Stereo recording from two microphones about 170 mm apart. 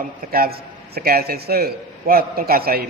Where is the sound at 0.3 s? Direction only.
60° right (ahead or behind).